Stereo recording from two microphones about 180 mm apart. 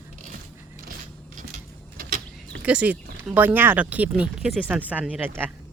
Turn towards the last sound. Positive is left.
turn(degrees=-10)  # may be behind; listen again after turning